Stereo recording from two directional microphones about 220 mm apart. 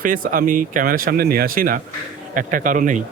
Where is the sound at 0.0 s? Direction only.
40° right (ahead or behind).